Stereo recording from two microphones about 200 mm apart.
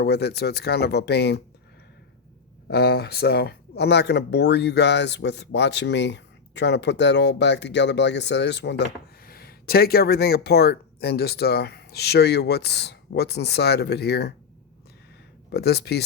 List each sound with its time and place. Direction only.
0.0 s speech: 55° left (ahead or behind)
2.6 s speech: 55° left (ahead or behind)
15.5 s speech: 55° left (ahead or behind)